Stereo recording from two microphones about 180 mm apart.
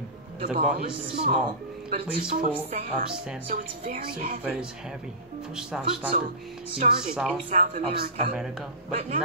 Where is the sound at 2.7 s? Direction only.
40° right (ahead or behind).